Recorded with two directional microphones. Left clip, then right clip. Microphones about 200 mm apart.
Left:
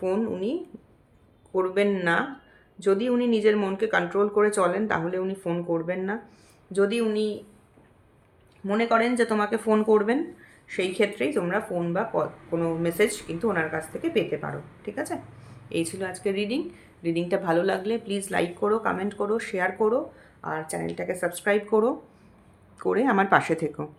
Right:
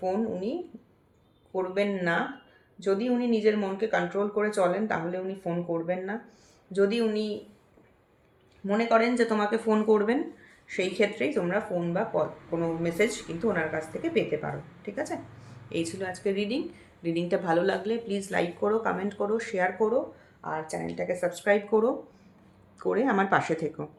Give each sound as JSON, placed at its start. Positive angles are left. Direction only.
{"t": 0.0, "sound": "speech", "side_deg": 40}
{"t": 1.5, "sound": "speech", "side_deg": 40}
{"t": 6.7, "sound": "speech", "side_deg": 25}
{"t": 8.6, "sound": "speech", "side_deg": 25}